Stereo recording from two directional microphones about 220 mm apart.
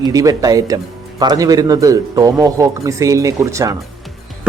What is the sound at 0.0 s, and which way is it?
Speech, 15° right (ahead or behind).